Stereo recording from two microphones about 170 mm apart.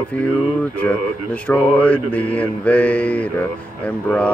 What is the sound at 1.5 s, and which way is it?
Music, 10° left (ahead or behind).